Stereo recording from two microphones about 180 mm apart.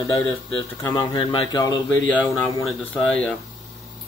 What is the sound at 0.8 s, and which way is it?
Speech, 20° left (ahead or behind).